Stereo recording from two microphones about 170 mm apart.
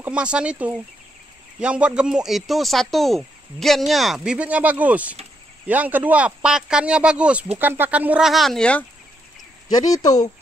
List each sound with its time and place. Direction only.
0.0 s speech: 5° right (ahead or behind)
9.8 s speech: 20° left (ahead or behind)